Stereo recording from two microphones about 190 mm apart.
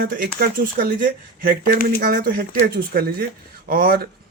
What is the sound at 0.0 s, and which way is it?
Speech, 50° right (ahead or behind).